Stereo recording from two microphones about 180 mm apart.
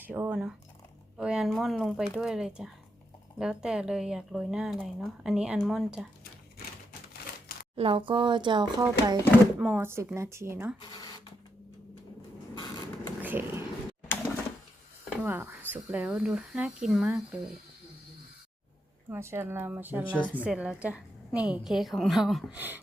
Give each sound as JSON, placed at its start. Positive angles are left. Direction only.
{"t": 0.0, "sound": "speech", "side_deg": -10}
{"t": 7.8, "sound": "speech", "side_deg": -30}
{"t": 9.6, "sound": "speech", "side_deg": -10}
{"t": 13.2, "sound": "a sound", "side_deg": -10}
{"t": 15.1, "sound": "speech", "side_deg": -10}
{"t": 19.1, "sound": "speech", "side_deg": -15}